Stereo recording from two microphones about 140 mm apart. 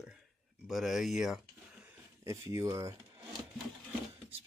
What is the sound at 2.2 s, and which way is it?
Speech, 20° right (ahead or behind).